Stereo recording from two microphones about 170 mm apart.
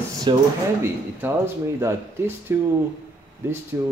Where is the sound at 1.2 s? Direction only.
15° right (ahead or behind).